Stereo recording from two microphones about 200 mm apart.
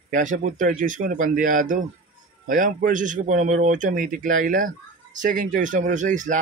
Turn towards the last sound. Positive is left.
turn(degrees=-40)  # may be behind; listen again after turning